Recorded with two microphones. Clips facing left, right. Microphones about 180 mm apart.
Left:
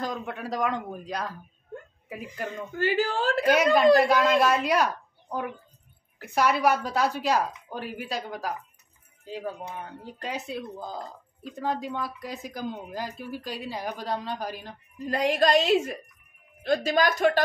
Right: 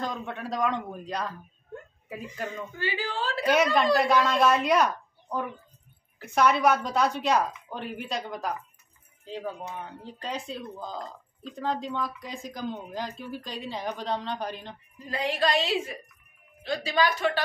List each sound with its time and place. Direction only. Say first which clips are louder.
0.0 s a woman's voice: left 1 dB; 5° left (ahead or behind)
2.7 s a woman's voice: left 11 dB; 50° left (ahead or behind)
4.0 s a woman's voice: left 1 dB; centre (ahead or behind)
10.2 s a woman's voice: left 1 dB; 5° left (ahead or behind)
15.0 s a woman's voice: left 4 dB; 45° left (ahead or behind)